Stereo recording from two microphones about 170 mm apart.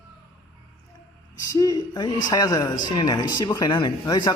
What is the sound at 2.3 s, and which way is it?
Speech, 20° left (ahead or behind).